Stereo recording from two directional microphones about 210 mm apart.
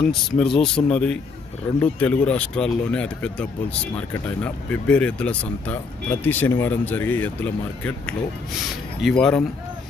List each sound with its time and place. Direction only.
0.0 s speech: 5° left (ahead or behind)